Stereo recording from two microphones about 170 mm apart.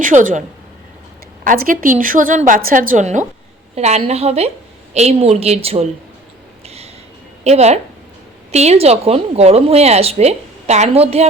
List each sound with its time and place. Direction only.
0.0 s a woman's voice: 50° right (ahead or behind)
1.5 s a woman's voice: 55° right (ahead or behind); by 5.9 s 35° right (ahead or behind)
6.7 s a sound: 35° right (ahead or behind)
7.4 s a woman's voice: 40° right (ahead or behind)